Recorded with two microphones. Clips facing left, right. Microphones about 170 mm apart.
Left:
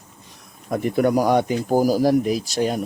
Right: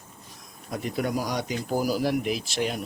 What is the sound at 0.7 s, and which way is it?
Speech, 55° left (ahead or behind).